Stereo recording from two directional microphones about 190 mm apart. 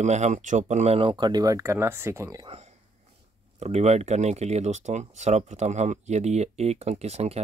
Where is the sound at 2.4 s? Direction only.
30° right (ahead or behind).